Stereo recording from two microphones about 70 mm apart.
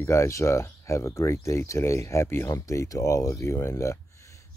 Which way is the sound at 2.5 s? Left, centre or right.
Left.